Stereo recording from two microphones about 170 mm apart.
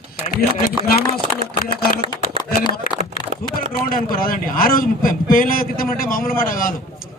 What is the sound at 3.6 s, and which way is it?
A man's voice, 55° left (ahead or behind).